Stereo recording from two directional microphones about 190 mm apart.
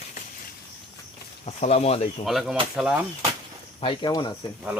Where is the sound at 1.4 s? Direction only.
35° left (ahead or behind).